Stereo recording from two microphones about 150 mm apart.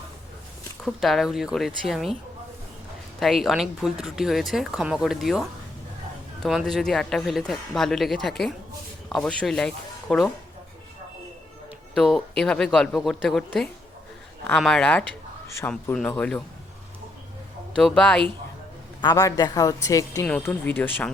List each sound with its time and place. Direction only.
0.9 s speech: centre (ahead or behind)
3.2 s speech: centre (ahead or behind)
6.7 s speech: centre (ahead or behind)
11.9 s speech: centre (ahead or behind)
15.4 s speech: 20° left (ahead or behind)
15.7 s speech: 5° left (ahead or behind)
17.7 s speech: 5° left (ahead or behind)
19.0 s a woman's voice: 25° left (ahead or behind)
20.2 s speech: 10° left (ahead or behind)